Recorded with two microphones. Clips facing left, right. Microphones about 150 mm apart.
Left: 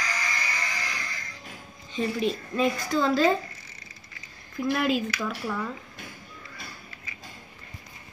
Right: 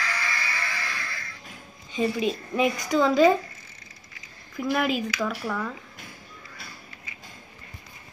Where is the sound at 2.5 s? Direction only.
10° right (ahead or behind).